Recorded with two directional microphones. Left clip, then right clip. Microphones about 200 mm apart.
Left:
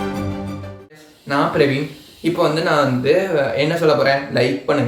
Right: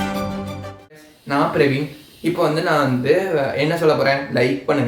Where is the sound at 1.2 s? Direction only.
5° right (ahead or behind).